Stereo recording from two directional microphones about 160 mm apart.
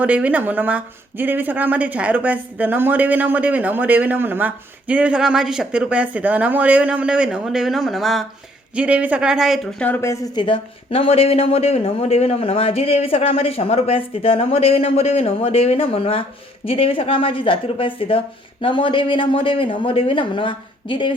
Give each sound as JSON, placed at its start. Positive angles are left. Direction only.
{"t": 0.0, "sound": "speech", "side_deg": -10}
{"t": 9.8, "sound": "a woman's voice", "side_deg": 15}
{"t": 10.3, "sound": "speech", "side_deg": 30}